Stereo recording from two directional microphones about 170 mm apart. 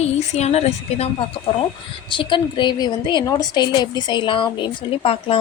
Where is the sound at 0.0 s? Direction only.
40° left (ahead or behind).